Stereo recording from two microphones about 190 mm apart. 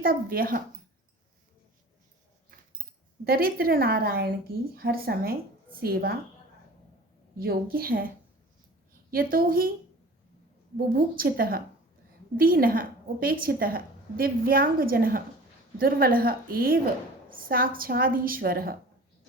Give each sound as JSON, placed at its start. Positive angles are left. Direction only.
{"t": 0.0, "sound": "a woman's voice", "side_deg": -50}
{"t": 3.2, "sound": "a woman's voice", "side_deg": -50}
{"t": 7.3, "sound": "a woman's voice", "side_deg": -50}
{"t": 10.8, "sound": "a woman's voice", "side_deg": -50}